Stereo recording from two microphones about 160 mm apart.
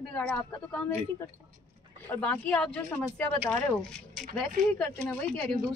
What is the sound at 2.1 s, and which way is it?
Speech, 10° left (ahead or behind).